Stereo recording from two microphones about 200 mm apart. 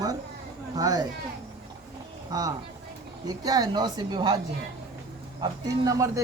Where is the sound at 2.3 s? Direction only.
20° right (ahead or behind).